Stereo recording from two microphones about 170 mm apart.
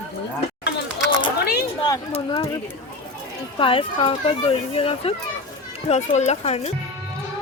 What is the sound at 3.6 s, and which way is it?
A child's voice, 30° left (ahead or behind).